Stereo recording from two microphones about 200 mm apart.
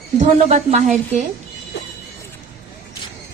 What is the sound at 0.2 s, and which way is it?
A woman's voice, 35° right (ahead or behind).